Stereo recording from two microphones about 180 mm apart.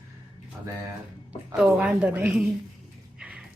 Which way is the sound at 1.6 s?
5° right (ahead or behind).